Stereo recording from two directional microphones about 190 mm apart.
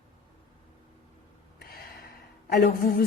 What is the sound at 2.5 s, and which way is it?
Speech, 55° left (ahead or behind).